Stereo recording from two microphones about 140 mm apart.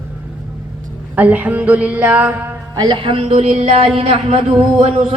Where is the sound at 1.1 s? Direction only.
10° right (ahead or behind).